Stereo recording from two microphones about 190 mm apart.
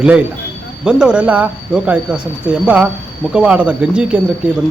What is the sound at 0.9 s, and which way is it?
Speech, 5° right (ahead or behind).